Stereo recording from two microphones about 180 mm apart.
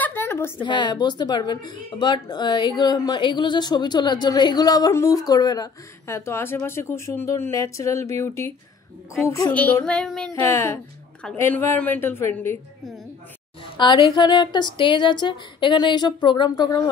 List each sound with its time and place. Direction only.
0.0 s a sound: 10° left (ahead or behind)
0.6 s speech: 25° left (ahead or behind); by 10.4 s 5° left (ahead or behind)
10.4 s speech: 15° left (ahead or behind)
13.7 s speech: 25° left (ahead or behind)